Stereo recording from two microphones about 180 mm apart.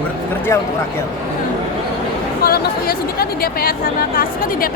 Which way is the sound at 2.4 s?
55° left (ahead or behind).